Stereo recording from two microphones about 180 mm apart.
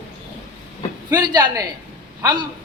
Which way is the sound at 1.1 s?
20° right (ahead or behind).